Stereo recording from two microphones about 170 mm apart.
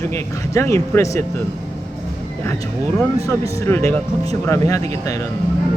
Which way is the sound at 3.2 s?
15° left (ahead or behind).